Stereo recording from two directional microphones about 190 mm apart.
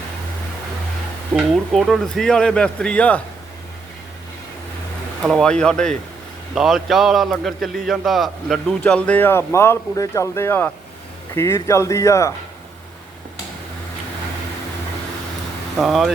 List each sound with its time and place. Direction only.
1.4 s a man's voice: centre (ahead or behind)
5.2 s a man's voice: centre (ahead or behind)
15.8 s a man's voice: centre (ahead or behind)